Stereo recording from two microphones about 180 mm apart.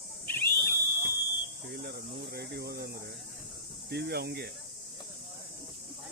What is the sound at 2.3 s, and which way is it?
Speech, 65° right (ahead or behind).